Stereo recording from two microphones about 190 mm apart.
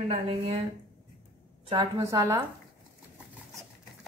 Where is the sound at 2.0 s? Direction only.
15° right (ahead or behind).